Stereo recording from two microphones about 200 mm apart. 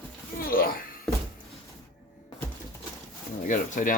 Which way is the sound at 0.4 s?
45° left (ahead or behind).